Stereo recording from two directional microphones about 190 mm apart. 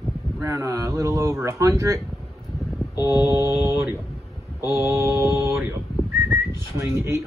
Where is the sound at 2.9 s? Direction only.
20° left (ahead or behind).